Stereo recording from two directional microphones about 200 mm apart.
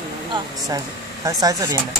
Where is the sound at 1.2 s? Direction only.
15° right (ahead or behind).